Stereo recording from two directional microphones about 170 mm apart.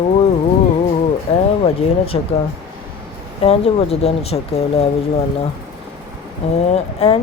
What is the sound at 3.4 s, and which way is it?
Speech, 35° left (ahead or behind).